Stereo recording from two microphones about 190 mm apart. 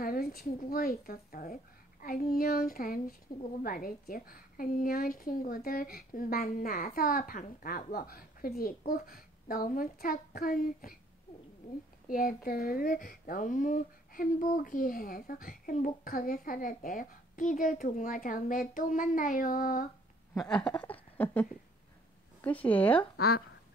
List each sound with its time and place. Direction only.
0.0 s a woman's voice: 50° left (ahead or behind)
20.3 s speech: 5° left (ahead or behind)